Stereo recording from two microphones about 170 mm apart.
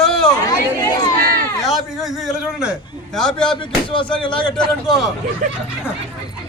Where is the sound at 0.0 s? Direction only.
5° left (ahead or behind).